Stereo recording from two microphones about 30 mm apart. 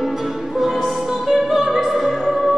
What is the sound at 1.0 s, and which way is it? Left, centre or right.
Opera, centre.